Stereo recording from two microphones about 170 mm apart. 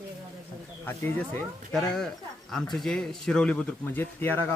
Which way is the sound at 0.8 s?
10° left (ahead or behind).